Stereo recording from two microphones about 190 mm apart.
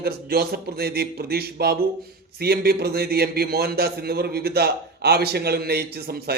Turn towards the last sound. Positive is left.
turn(degrees=-55)  # may be behind; listen again after turning